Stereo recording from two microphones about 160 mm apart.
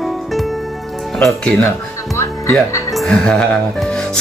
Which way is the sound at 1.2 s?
5° left (ahead or behind).